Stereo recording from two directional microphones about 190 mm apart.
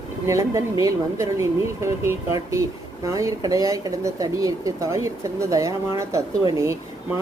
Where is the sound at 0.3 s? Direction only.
15° right (ahead or behind).